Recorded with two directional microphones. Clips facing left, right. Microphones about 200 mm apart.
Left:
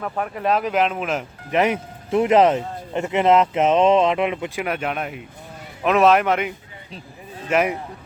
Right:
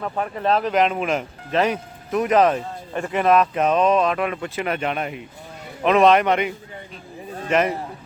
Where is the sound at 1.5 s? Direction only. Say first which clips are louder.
Left 1 dB; 20° left (ahead or behind).